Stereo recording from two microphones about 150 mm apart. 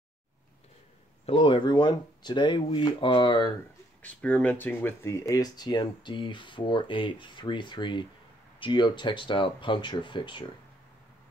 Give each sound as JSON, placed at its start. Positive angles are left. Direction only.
{"t": 1.2, "sound": "speech", "side_deg": 35}
{"t": 4.0, "sound": "speech", "side_deg": 10}